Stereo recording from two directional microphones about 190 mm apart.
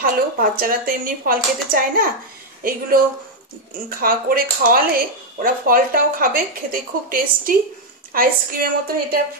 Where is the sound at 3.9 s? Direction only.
50° right (ahead or behind).